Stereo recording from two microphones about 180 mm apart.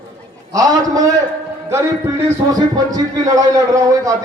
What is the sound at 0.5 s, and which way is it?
A man's voice, 20° right (ahead or behind).